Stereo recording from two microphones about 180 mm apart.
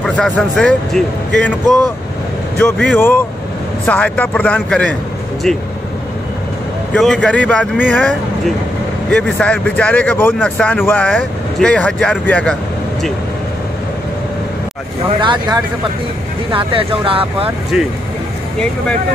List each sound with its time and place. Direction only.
0.0 s speech: 5° left (ahead or behind)
6.9 s speech: 5° left (ahead or behind)
9.1 s speech: 5° left (ahead or behind)
15.1 s speech: 25° right (ahead or behind)